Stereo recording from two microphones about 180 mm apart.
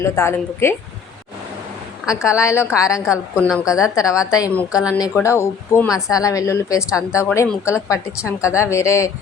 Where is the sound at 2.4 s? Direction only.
15° left (ahead or behind).